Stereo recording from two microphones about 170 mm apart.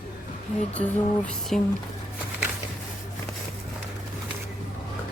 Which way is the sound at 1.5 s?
5° left (ahead or behind).